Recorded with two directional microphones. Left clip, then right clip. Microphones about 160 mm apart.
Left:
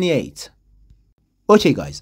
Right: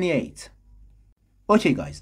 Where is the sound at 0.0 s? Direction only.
30° left (ahead or behind).